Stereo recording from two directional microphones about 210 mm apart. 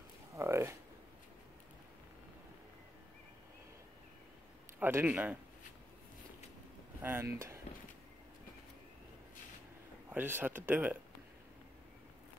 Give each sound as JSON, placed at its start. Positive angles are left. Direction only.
{"t": 0.4, "sound": "speech", "side_deg": -10}
{"t": 4.7, "sound": "speech", "side_deg": -10}
{"t": 7.0, "sound": "speech", "side_deg": -10}
{"t": 7.3, "sound": "a sound", "side_deg": -15}
{"t": 10.0, "sound": "speech", "side_deg": -10}